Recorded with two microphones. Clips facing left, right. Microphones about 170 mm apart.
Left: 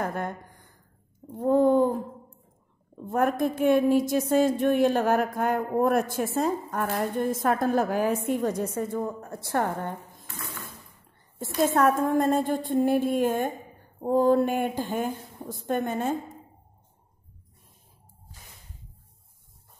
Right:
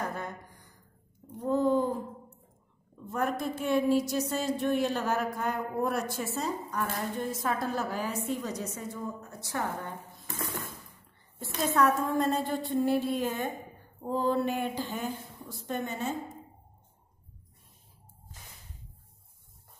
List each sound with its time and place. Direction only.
0.0 s a sound: 55° left (ahead or behind)
3.1 s a woman's voice: 50° left (ahead or behind)
11.3 s a woman's voice: 45° left (ahead or behind)